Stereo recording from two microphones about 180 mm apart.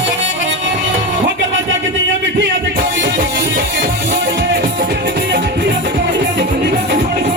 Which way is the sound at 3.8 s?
75° right (ahead or behind).